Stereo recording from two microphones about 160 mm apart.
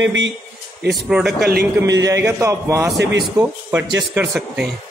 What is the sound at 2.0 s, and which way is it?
Speech, 20° right (ahead or behind).